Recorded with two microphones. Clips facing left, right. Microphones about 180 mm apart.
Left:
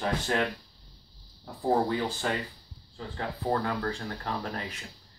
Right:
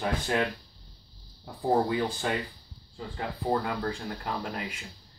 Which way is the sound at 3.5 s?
15° right (ahead or behind).